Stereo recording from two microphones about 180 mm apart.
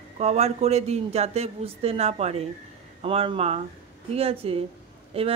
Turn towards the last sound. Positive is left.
turn(degrees=-35)  # may be behind; listen again after turning